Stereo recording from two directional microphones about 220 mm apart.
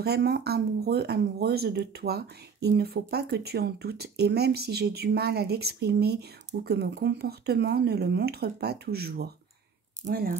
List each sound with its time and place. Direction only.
0.0 s speech: 45° right (ahead or behind)